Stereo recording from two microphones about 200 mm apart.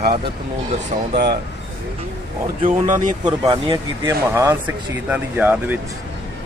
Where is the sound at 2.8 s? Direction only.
40° right (ahead or behind).